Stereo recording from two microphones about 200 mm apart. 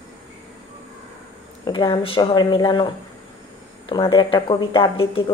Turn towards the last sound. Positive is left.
turn(degrees=25)  # may be behind; listen again after turning